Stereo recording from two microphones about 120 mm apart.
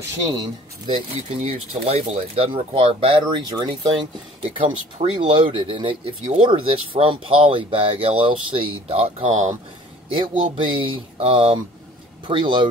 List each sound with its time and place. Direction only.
0.4 s speech: 45° right (ahead or behind)
1.5 s speech: 60° right (ahead or behind)
3.3 s speech: 40° right (ahead or behind)
4.6 s speech: 50° right (ahead or behind); by 9.5 s 75° right (ahead or behind)
10.1 s speech: 45° right (ahead or behind)